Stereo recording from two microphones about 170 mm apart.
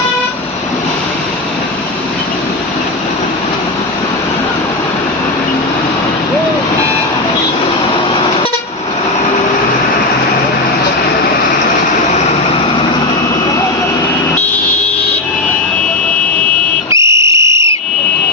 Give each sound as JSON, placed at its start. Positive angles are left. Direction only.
{"t": 16.9, "sound": "whistle", "side_deg": -15}